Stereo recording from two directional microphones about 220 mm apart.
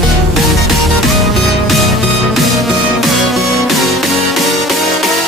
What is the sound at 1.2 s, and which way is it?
Music, centre (ahead or behind).